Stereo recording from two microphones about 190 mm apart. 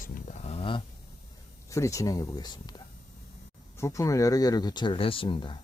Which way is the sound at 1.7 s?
15° left (ahead or behind).